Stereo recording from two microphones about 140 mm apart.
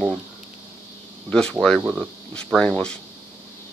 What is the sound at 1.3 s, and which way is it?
Speech, 5° left (ahead or behind).